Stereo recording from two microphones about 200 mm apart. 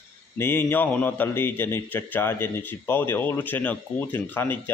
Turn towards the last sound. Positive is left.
turn(degrees=10)  # may be behind; listen again after turning